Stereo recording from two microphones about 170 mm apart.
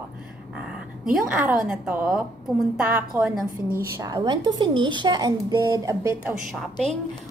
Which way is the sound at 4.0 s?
20° right (ahead or behind).